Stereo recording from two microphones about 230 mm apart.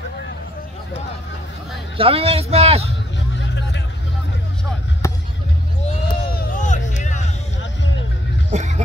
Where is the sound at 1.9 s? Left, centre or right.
Right.